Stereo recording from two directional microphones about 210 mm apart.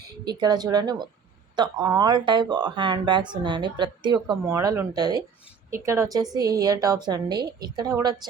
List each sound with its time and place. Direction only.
0.3 s a woman's voice: 20° right (ahead or behind)